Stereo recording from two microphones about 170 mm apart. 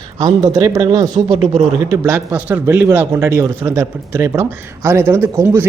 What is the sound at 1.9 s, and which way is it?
Speech, 15° right (ahead or behind).